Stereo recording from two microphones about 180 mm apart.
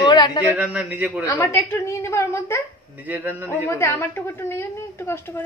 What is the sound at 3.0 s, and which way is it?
Speech, 10° right (ahead or behind).